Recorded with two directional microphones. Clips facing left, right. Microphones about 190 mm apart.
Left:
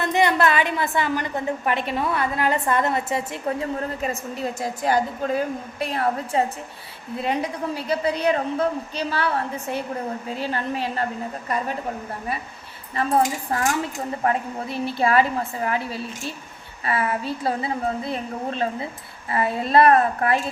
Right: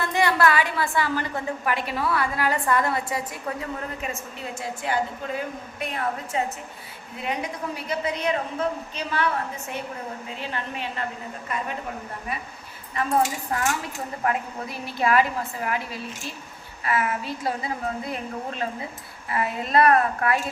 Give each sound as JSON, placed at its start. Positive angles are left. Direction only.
{"t": 0.0, "sound": "a woman's voice", "side_deg": 20}
{"t": 4.0, "sound": "a woman's voice", "side_deg": 40}
{"t": 7.9, "sound": "a woman's voice", "side_deg": 35}
{"t": 12.9, "sound": "a woman's voice", "side_deg": 30}